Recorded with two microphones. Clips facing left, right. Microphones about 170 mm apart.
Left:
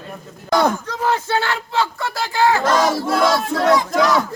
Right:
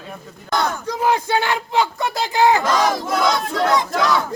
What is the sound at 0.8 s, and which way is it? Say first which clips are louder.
Speech: right 2 dB; 15° right (ahead or behind).